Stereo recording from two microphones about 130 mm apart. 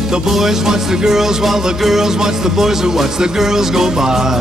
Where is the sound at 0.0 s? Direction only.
5° right (ahead or behind).